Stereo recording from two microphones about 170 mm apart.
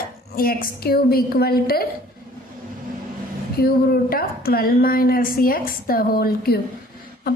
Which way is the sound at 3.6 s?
65° left (ahead or behind).